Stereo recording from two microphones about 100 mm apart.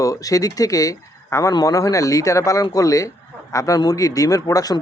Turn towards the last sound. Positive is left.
turn(degrees=40)  # may be behind; listen again after turning